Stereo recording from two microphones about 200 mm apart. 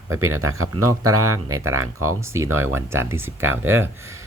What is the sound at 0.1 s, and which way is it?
Speech, 90° right.